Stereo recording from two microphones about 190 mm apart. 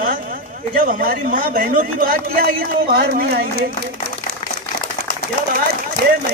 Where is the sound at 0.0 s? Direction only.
45° right (ahead or behind).